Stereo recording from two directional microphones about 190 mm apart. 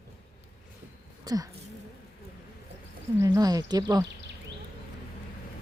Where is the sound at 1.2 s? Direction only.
20° right (ahead or behind).